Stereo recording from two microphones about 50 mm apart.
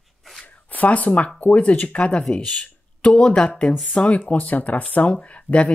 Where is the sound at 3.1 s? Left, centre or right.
Centre.